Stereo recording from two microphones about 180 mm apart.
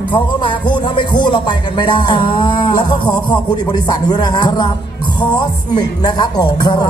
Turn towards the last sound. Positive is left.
turn(degrees=20)  # may be behind; listen again after turning